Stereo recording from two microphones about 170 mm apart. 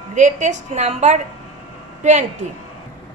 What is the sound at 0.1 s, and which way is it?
A woman's voice, 45° right (ahead or behind).